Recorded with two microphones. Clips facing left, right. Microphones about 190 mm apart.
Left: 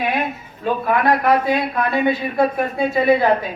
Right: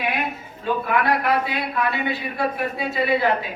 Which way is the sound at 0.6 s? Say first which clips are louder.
Left 4 dB; 45° left (ahead or behind).